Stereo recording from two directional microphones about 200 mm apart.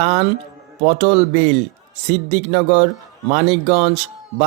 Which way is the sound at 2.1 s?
35° right (ahead or behind).